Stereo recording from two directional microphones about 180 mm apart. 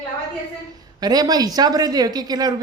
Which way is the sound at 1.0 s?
20° right (ahead or behind).